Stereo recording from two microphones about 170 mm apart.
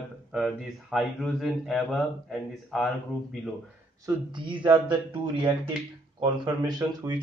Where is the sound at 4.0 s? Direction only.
25° right (ahead or behind).